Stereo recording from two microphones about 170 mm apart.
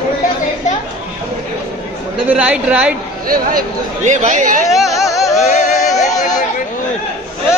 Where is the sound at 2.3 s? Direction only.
5° right (ahead or behind).